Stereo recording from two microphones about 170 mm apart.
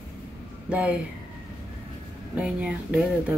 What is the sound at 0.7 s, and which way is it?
Speech, 5° right (ahead or behind).